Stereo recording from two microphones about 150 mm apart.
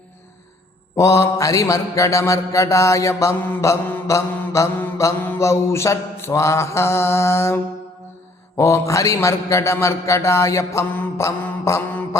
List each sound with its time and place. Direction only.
0.9 s mantra: 20° left (ahead or behind)